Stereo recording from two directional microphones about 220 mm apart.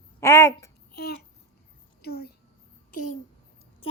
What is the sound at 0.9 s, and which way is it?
Babbling, 45° left (ahead or behind).